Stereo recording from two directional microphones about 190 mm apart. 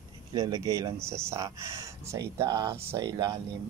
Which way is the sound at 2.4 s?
15° right (ahead or behind).